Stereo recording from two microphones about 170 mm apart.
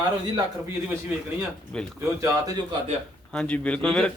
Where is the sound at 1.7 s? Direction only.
5° left (ahead or behind).